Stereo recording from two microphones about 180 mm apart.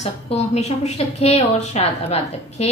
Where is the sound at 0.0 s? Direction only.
40° left (ahead or behind).